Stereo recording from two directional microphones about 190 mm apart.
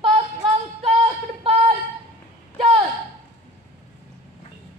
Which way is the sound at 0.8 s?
30° right (ahead or behind).